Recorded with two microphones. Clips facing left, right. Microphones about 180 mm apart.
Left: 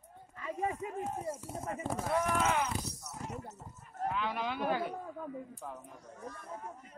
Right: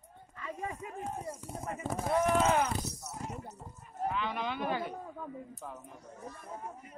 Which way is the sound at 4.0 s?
Centre (ahead or behind).